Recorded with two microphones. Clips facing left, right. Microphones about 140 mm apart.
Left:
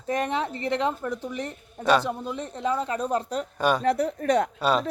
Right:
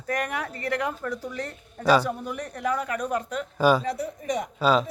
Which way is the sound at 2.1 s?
20° left (ahead or behind).